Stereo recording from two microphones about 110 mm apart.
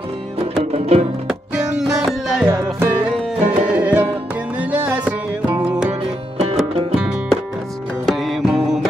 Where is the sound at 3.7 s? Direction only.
15° right (ahead or behind).